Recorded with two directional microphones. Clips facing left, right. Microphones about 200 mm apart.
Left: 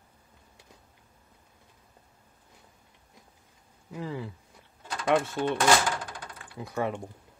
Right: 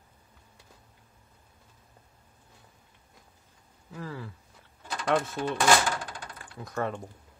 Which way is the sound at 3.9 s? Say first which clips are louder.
Left 4 dB; 15° left (ahead or behind).